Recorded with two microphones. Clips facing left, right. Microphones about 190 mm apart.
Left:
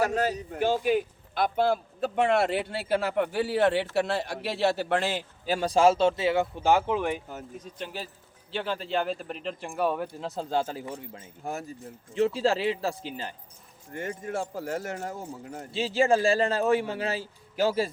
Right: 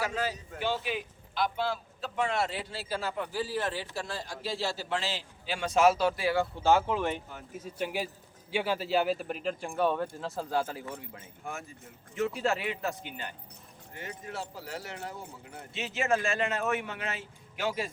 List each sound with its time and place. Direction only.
0.0 s a man's voice: 45° left (ahead or behind); by 7.2 s 15° left (ahead or behind)
7.6 s speech: 10° right (ahead or behind); by 10.1 s 5° left (ahead or behind)
10.2 s a man's voice: 20° left (ahead or behind)
13.9 s speech: 50° left (ahead or behind)
15.7 s a man's voice: 30° left (ahead or behind)